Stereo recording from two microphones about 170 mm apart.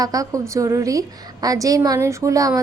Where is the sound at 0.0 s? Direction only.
20° right (ahead or behind).